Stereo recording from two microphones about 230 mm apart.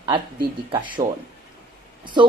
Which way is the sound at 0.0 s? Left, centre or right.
Right.